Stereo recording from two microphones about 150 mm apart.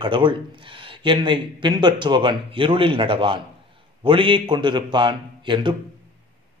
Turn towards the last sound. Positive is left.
turn(degrees=-30)  # may be behind; listen again after turning